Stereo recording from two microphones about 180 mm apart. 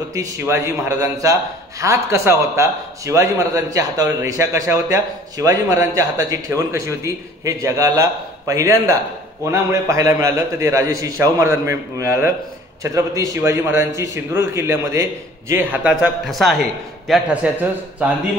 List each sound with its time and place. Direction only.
0.1 s a man's voice: 15° right (ahead or behind)